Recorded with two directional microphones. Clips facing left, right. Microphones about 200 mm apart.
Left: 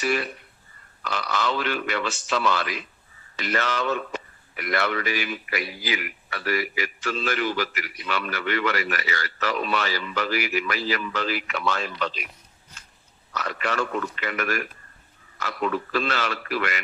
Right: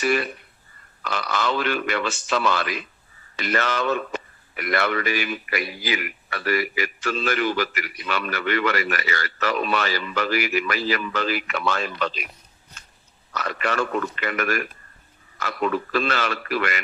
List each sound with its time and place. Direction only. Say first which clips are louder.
0.0 s speech: right 3 dB; 55° right (ahead or behind)
13.3 s speech: right 2 dB; 55° right (ahead or behind)